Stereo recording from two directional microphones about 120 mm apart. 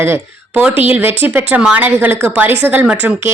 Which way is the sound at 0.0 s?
20° right (ahead or behind).